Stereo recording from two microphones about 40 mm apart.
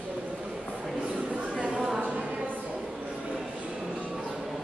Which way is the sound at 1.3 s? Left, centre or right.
Right.